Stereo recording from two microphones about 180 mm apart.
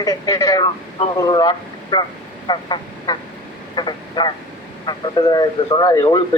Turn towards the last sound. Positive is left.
turn(degrees=20)  # may be behind; listen again after turning